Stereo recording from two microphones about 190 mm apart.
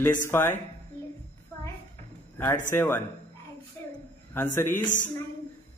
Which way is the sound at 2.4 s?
10° left (ahead or behind).